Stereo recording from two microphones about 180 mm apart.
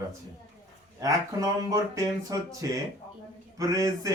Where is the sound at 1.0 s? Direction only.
20° right (ahead or behind).